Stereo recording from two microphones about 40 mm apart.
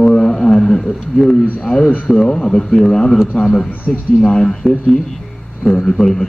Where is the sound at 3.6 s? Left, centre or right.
Left.